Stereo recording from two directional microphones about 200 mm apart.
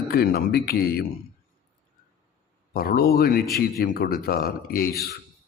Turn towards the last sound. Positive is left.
turn(degrees=50)  # may be behind; listen again after turning